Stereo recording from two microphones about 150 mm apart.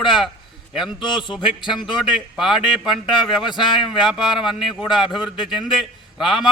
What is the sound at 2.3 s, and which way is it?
Speech, centre (ahead or behind).